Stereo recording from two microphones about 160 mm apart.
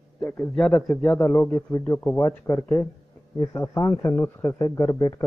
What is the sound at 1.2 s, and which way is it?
A man's voice, 15° left (ahead or behind).